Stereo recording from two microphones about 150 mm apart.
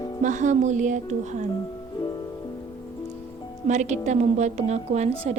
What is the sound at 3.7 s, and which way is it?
Speech, 50° right (ahead or behind).